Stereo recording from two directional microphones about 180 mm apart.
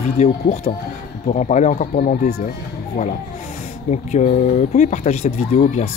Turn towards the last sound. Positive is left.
turn(degrees=40)  # may be behind; listen again after turning